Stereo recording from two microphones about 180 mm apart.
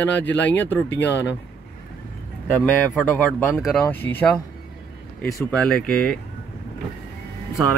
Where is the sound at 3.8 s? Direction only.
10° left (ahead or behind).